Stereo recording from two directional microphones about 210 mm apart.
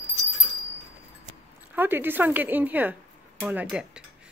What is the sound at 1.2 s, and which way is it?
Speech, 10° right (ahead or behind).